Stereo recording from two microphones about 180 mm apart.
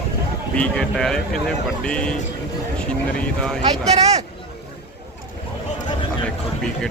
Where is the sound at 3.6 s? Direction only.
35° right (ahead or behind).